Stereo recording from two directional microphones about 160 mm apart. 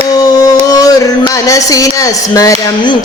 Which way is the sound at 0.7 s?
20° left (ahead or behind).